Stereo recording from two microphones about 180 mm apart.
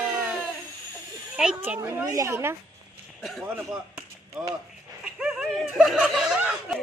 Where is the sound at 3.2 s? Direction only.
Centre (ahead or behind).